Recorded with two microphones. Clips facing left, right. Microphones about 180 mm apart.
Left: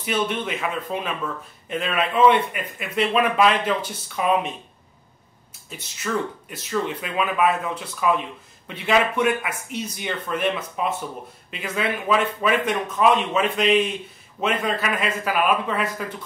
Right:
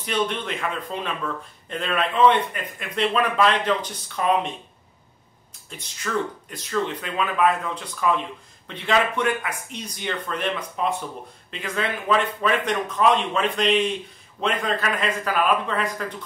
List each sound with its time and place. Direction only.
0.0 s a man's voice: 5° left (ahead or behind)
5.7 s a man's voice: 5° left (ahead or behind)